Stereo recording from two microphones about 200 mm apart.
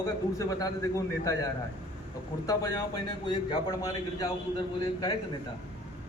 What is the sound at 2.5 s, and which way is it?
A man's voice, 15° left (ahead or behind).